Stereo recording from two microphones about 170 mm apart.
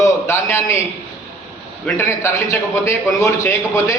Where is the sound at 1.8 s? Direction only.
15° left (ahead or behind).